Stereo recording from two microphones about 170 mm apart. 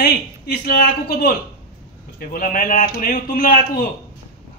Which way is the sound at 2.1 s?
55° left (ahead or behind).